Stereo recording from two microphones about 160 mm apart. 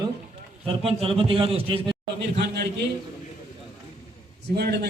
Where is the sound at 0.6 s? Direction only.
35° right (ahead or behind).